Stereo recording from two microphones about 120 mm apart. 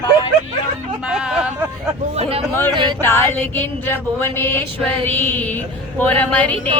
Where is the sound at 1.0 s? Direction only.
5° right (ahead or behind).